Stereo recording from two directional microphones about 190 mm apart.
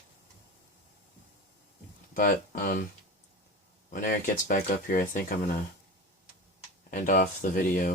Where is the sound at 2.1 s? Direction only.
45° left (ahead or behind).